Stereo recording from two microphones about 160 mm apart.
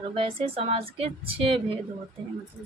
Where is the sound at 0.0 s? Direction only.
35° right (ahead or behind).